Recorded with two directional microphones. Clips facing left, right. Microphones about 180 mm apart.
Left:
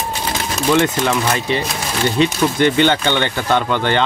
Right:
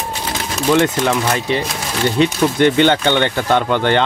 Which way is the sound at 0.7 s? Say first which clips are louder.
Right 1 dB; 45° right (ahead or behind).